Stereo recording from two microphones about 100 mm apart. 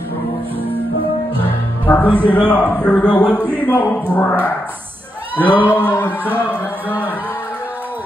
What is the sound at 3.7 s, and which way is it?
Speech, 15° left (ahead or behind).